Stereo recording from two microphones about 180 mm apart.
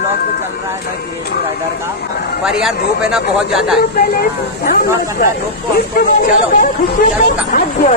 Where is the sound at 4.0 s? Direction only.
60° left (ahead or behind).